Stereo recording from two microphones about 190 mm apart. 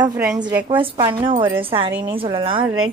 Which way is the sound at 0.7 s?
25° right (ahead or behind).